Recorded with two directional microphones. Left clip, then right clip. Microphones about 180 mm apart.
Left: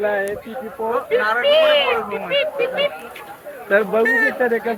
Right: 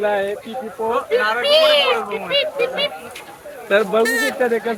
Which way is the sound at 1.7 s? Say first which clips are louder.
Right 1 dB; 25° right (ahead or behind).